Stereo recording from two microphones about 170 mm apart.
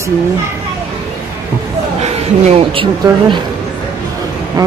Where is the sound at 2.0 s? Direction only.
40° right (ahead or behind).